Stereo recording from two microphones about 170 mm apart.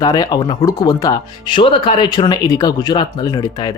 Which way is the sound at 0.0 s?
25° left (ahead or behind).